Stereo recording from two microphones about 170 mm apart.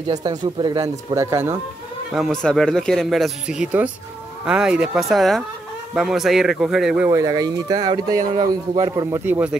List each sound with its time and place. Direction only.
0.1 s speech: 25° right (ahead or behind)
2.4 s speech: 5° left (ahead or behind)
7.1 s speech: 20° right (ahead or behind)
8.2 s speech: 50° right (ahead or behind)
8.7 s speech: 25° right (ahead or behind)
9.2 s speech: 10° right (ahead or behind)